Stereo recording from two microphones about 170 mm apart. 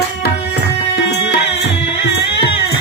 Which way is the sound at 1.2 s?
85° left.